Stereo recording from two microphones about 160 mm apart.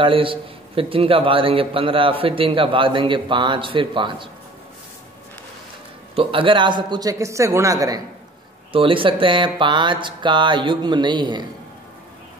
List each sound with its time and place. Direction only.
0.0 s a man's voice: 35° right (ahead or behind)
6.1 s speech: 30° right (ahead or behind)
8.7 s speech: 35° right (ahead or behind)